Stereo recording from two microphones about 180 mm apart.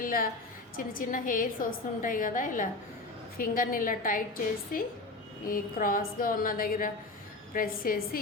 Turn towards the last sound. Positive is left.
turn(degrees=50)  # may be behind; listen again after turning